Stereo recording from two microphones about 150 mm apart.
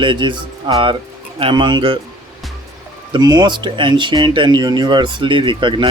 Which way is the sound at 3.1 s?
25° right (ahead or behind).